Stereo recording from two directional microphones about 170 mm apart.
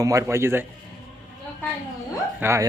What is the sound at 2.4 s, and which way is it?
Speech, 15° right (ahead or behind).